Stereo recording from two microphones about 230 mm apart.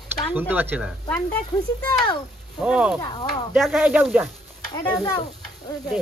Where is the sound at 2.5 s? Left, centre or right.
Centre.